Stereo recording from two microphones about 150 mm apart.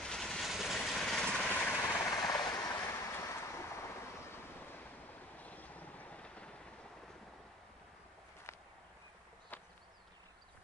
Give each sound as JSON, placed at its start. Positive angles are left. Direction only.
{"t": 0.0, "sound": "vehicle", "side_deg": 5}